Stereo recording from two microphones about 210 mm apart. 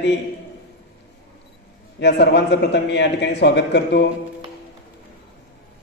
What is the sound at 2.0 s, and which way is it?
A man's voice, 55° left (ahead or behind).